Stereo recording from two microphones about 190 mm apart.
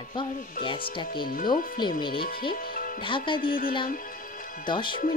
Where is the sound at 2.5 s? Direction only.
50° left (ahead or behind).